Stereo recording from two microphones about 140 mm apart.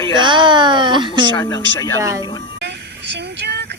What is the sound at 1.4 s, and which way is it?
Speech, 30° left (ahead or behind).